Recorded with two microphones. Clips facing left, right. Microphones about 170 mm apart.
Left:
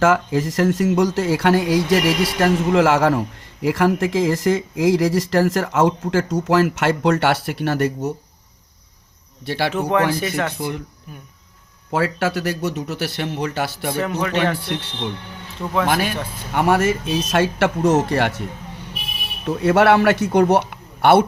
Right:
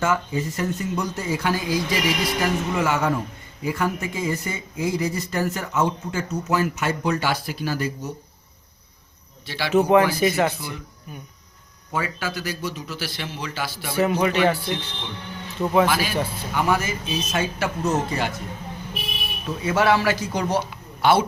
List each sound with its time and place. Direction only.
0.0 s speech: 90° left; by 8.1 s 70° left (ahead or behind)
9.5 s a man's voice: 55° left (ahead or behind)
10.2 s speech: 5° right (ahead or behind)
11.9 s a man's voice: 75° left (ahead or behind); by 13.9 s 60° left (ahead or behind)
13.9 s speech: 5° right (ahead or behind)
15.6 s speech: 15° right (ahead or behind)
15.9 s a man's voice: 55° left (ahead or behind); by 18.4 s 80° left
19.5 s a man's voice: 65° left (ahead or behind)